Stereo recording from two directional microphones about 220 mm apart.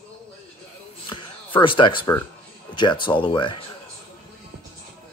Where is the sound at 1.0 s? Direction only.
20° left (ahead or behind).